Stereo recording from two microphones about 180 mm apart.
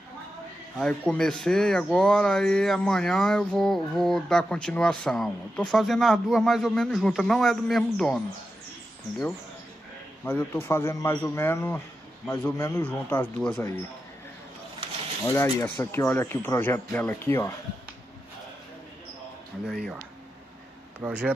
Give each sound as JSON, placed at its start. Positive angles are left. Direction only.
{"t": 0.7, "sound": "speech", "side_deg": 5}
{"t": 10.2, "sound": "a man's voice", "side_deg": 15}
{"t": 15.3, "sound": "a man's voice", "side_deg": 15}
{"t": 19.6, "sound": "speech", "side_deg": 0}
{"t": 21.0, "sound": "speech", "side_deg": -10}